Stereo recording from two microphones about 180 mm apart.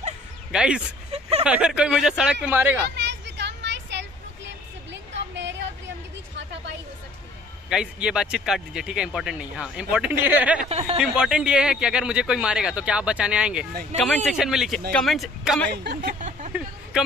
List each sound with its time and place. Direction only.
0.5 s speech: 5° right (ahead or behind)
3.0 s vehicle: 75° right (ahead or behind)
5.3 s a sound: 90° right
7.7 s speech: 5° right (ahead or behind)
10.6 s speech: 35° right (ahead or behind)
11.0 s speech: 5° right (ahead or behind)
15.7 s speech: 65° right (ahead or behind)
16.2 s a sound: 40° right (ahead or behind)